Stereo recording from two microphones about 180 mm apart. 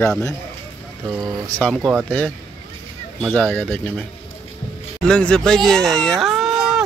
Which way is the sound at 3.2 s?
10° left (ahead or behind).